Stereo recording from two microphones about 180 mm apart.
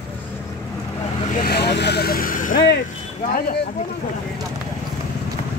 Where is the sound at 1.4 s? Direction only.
65° left (ahead or behind).